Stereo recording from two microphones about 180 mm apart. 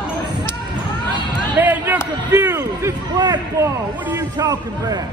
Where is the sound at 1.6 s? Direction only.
10° right (ahead or behind).